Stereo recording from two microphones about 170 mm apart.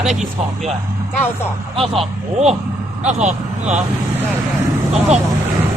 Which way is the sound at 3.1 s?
45° right (ahead or behind).